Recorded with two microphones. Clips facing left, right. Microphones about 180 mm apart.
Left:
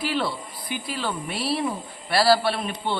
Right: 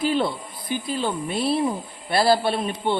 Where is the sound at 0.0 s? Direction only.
20° right (ahead or behind).